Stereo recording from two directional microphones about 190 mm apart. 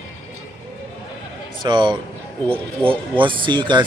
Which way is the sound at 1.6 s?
25° right (ahead or behind).